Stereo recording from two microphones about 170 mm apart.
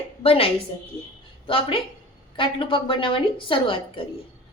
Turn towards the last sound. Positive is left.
turn(degrees=30)  # may be behind; listen again after turning